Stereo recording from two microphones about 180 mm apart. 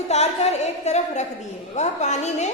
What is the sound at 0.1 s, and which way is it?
A woman's voice, 35° left (ahead or behind).